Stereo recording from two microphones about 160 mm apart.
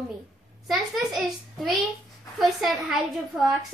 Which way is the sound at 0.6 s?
5° right (ahead or behind).